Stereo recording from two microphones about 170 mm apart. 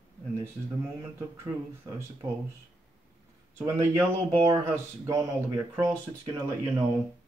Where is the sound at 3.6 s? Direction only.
20° right (ahead or behind).